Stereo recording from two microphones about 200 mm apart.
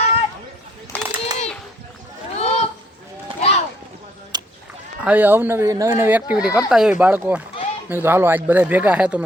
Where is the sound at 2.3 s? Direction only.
30° left (ahead or behind).